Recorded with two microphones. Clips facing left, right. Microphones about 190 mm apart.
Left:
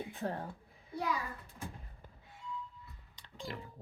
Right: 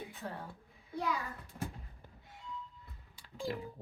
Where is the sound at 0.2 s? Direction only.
45° left (ahead or behind).